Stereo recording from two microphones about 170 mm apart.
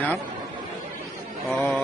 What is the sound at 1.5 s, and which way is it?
Speech, 10° left (ahead or behind).